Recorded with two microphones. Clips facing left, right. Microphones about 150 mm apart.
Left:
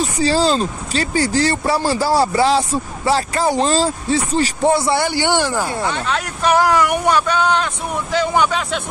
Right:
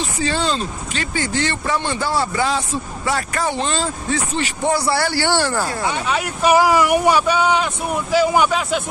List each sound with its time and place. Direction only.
0.0 s speech: 35° left (ahead or behind); by 5.7 s 15° left (ahead or behind)
5.9 s speech: 10° right (ahead or behind)